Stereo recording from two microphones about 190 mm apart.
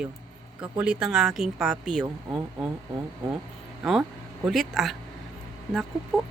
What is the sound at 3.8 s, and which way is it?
Speech, centre (ahead or behind).